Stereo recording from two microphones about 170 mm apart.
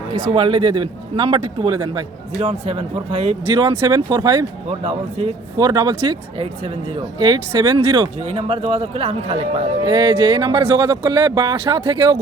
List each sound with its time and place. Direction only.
0.1 s a man's voice: 30° right (ahead or behind)
2.4 s speech: 35° right (ahead or behind)
3.7 s a man's voice: 20° right (ahead or behind)
4.8 s speech: 35° right (ahead or behind)
5.5 s a man's voice: 20° right (ahead or behind)
7.0 s a man's voice: 20° right (ahead or behind)
8.2 s a man's voice: 35° right (ahead or behind)